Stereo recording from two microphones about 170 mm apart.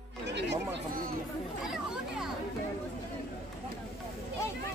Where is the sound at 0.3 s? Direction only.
90° right.